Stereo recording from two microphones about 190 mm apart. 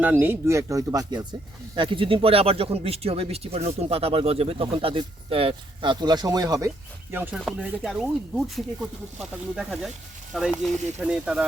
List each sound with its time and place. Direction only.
0.0 s speech: 10° right (ahead or behind)